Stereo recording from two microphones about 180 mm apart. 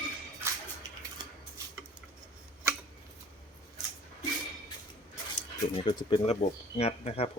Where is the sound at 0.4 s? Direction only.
15° right (ahead or behind).